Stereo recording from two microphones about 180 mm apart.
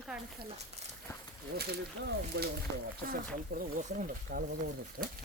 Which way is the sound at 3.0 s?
50° right (ahead or behind).